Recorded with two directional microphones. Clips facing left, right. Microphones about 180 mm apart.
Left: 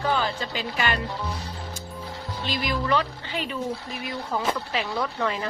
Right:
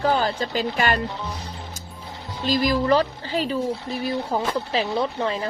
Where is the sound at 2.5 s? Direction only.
40° right (ahead or behind).